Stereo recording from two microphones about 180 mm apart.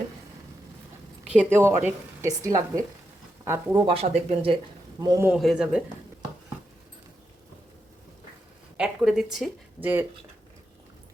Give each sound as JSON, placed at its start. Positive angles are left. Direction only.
{"t": 1.3, "sound": "a woman's voice", "side_deg": -10}
{"t": 3.8, "sound": "speech", "side_deg": -30}
{"t": 4.9, "sound": "a man's voice", "side_deg": -20}
{"t": 5.3, "sound": "speech", "side_deg": -5}
{"t": 8.8, "sound": "speech", "side_deg": -5}